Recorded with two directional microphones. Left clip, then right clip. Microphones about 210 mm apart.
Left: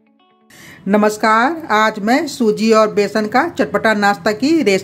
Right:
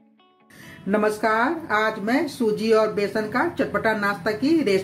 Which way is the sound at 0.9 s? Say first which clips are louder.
Left 8 dB; 55° left (ahead or behind).